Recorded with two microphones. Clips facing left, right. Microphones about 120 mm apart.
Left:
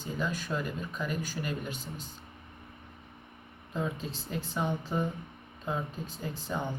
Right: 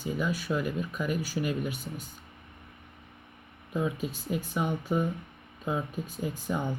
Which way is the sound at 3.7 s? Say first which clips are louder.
Right 4 dB; 10° right (ahead or behind).